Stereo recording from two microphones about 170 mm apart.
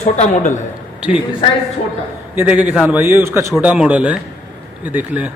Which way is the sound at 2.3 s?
10° right (ahead or behind).